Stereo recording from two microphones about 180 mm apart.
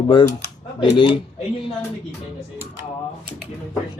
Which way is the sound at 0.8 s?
25° left (ahead or behind).